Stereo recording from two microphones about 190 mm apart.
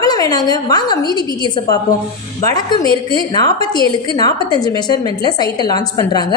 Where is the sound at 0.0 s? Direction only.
20° left (ahead or behind).